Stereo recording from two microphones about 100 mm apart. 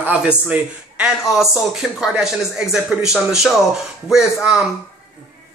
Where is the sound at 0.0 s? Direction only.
10° right (ahead or behind).